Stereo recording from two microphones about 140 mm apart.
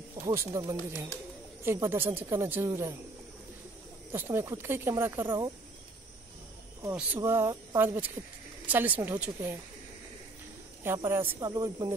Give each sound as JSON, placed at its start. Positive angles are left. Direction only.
{"t": 0.2, "sound": "speech", "side_deg": -20}
{"t": 4.1, "sound": "speech", "side_deg": -15}
{"t": 6.8, "sound": "speech", "side_deg": -10}
{"t": 10.8, "sound": "speech", "side_deg": -15}